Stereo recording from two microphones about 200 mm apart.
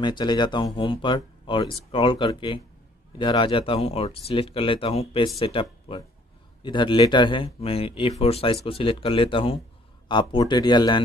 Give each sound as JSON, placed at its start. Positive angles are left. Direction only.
{"t": 0.0, "sound": "speech", "side_deg": 20}